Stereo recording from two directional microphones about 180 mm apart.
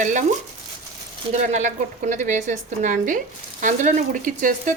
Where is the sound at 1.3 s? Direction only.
40° right (ahead or behind).